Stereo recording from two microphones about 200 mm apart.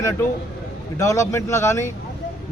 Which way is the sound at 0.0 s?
15° left (ahead or behind).